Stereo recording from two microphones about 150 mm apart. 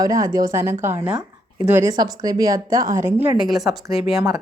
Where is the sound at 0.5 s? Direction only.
15° right (ahead or behind).